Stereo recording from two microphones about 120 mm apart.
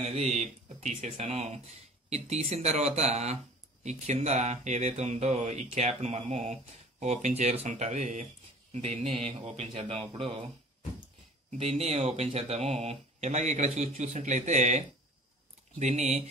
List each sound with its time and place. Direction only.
0.0 s speech: 70° right (ahead or behind); by 8.3 s 85° right
8.7 s speech: 65° right (ahead or behind)
9.8 s a man's voice: 50° right (ahead or behind)
11.5 s speech: 60° right (ahead or behind)